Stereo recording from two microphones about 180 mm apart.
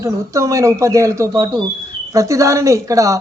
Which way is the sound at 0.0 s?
15° right (ahead or behind).